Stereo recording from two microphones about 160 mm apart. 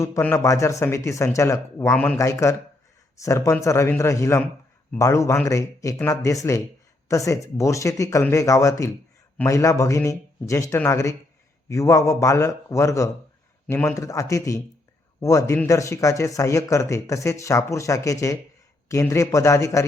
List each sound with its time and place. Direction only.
0.0 s speech: 15° left (ahead or behind)